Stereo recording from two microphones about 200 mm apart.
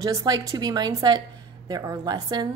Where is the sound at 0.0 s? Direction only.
20° right (ahead or behind).